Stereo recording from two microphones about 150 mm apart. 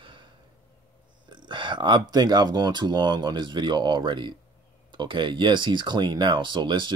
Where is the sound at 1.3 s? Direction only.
30° right (ahead or behind).